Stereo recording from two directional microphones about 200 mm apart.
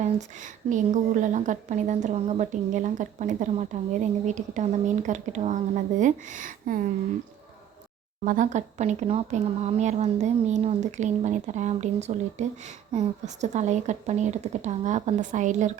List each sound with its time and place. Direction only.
0.0 s speech: 35° right (ahead or behind)
8.2 s speech: 40° right (ahead or behind)